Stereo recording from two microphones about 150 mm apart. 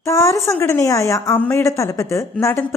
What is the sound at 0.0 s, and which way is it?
A woman's voice, 20° left (ahead or behind).